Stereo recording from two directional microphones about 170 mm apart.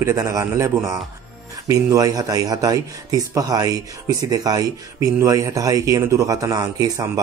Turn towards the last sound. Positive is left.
turn(degrees=-20)  # may be behind; listen again after turning